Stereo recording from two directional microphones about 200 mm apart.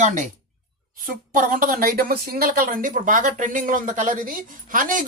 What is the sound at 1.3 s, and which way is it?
Speech, 45° right (ahead or behind).